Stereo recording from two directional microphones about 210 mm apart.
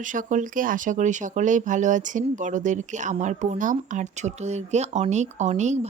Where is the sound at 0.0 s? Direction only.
40° right (ahead or behind).